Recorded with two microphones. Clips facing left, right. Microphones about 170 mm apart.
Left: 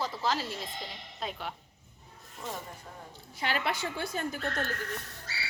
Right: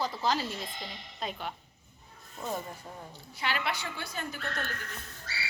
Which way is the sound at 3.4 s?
45° left (ahead or behind).